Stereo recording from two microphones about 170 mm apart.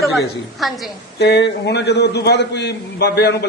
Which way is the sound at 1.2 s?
90° left.